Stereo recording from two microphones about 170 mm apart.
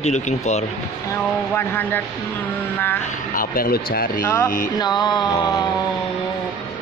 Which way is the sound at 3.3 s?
60° left (ahead or behind).